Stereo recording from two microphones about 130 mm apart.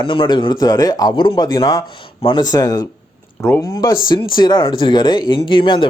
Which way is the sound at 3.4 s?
15° left (ahead or behind).